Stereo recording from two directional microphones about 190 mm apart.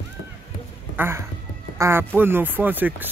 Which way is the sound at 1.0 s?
15° right (ahead or behind).